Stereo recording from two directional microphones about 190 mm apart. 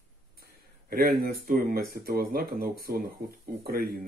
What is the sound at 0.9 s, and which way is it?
Speech, 50° right (ahead or behind).